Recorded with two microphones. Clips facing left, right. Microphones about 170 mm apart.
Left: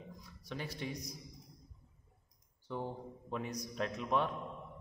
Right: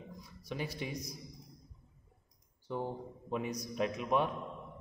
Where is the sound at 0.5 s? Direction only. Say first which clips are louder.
Right 2 dB; 10° right (ahead or behind).